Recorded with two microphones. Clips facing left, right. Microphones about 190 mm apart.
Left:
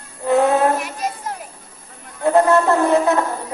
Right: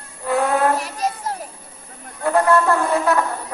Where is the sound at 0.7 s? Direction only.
35° right (ahead or behind).